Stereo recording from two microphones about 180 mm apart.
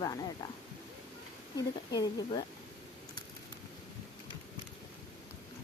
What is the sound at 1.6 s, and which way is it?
Speech, 20° left (ahead or behind).